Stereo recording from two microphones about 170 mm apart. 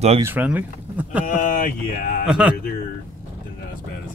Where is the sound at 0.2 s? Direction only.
10° right (ahead or behind).